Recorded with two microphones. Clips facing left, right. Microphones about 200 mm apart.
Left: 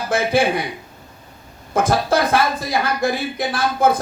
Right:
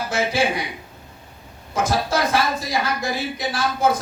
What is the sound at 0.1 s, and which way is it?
Speech, 55° left (ahead or behind).